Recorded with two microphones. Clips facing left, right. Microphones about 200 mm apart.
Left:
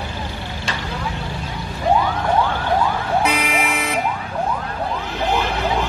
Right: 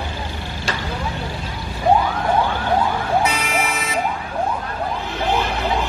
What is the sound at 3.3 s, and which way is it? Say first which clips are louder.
Vehicle: left 1 dB; 60° left (ahead or behind).